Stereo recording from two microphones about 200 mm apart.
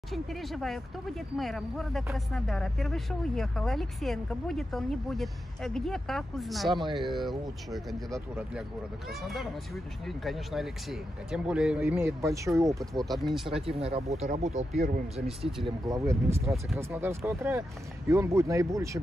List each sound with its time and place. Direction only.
0.1 s speech: centre (ahead or behind); by 13.0 s 15° right (ahead or behind)
13.0 s speech: centre (ahead or behind)
13.7 s speech: 30° right (ahead or behind)
15.6 s speech: 15° right (ahead or behind)